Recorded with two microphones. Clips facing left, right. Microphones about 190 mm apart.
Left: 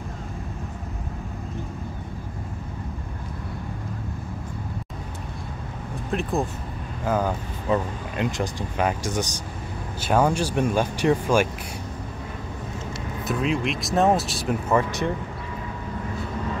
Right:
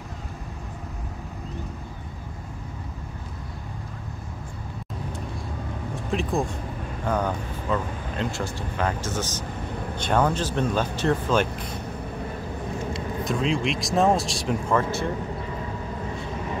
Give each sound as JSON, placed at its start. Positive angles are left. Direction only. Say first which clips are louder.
{"t": 6.0, "sound": "speech", "louder": "even", "side_deg": 0}
{"t": 7.7, "sound": "speech", "louder": "left 3 dB", "side_deg": 15}
{"t": 13.2, "sound": "speech", "louder": "left 1 dB", "side_deg": 5}